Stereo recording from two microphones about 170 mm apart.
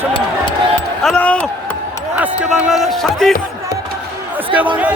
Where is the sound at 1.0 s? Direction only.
5° left (ahead or behind).